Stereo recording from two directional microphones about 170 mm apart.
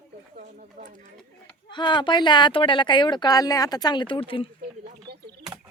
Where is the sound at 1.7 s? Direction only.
25° left (ahead or behind).